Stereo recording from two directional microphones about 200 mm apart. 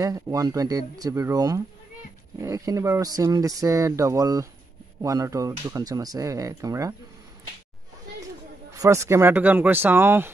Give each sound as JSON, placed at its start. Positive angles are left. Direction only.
{"t": 0.0, "sound": "speech", "side_deg": -15}
{"t": 8.7, "sound": "speech", "side_deg": -15}